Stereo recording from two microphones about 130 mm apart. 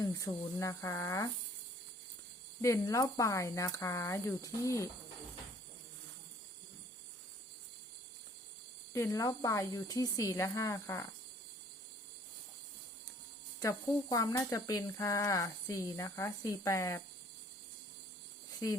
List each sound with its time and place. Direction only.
0.0 s speech: 25° left (ahead or behind)
2.6 s speech: 25° left (ahead or behind)
8.9 s speech: 20° left (ahead or behind)
13.6 s speech: 30° left (ahead or behind)